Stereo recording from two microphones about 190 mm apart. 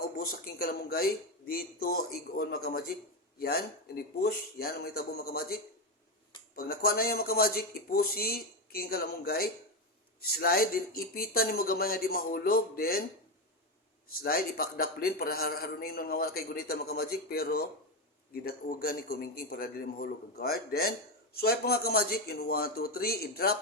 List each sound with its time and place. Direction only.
0.0 s a man's voice: 55° left (ahead or behind)
6.6 s a man's voice: 50° left (ahead or behind)
14.1 s a man's voice: 50° left (ahead or behind)